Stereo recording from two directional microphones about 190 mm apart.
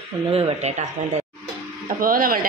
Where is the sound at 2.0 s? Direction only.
50° right (ahead or behind).